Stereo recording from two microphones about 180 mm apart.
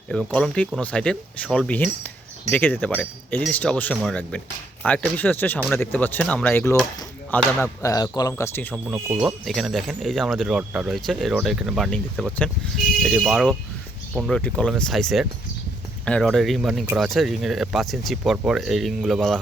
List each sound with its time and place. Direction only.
0.1 s speech: 5° left (ahead or behind)
8.7 s speech: centre (ahead or behind)